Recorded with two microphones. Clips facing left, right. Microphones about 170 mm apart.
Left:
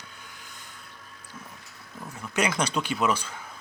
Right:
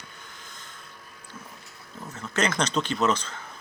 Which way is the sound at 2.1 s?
15° left (ahead or behind).